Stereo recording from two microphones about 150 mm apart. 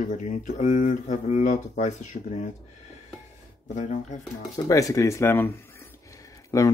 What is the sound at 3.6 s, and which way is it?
Speech, 55° left (ahead or behind).